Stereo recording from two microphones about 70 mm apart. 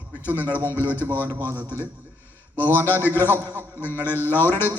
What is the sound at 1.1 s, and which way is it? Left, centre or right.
Speech, right.